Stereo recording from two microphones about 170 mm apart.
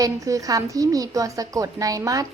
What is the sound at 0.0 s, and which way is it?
A woman's voice, 20° right (ahead or behind).